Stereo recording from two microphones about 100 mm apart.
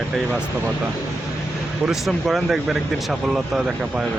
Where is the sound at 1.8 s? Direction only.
5° right (ahead or behind).